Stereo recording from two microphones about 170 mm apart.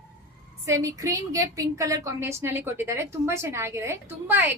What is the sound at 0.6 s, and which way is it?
A woman's voice, 15° right (ahead or behind).